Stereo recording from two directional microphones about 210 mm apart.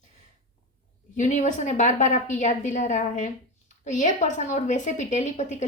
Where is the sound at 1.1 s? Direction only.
35° left (ahead or behind).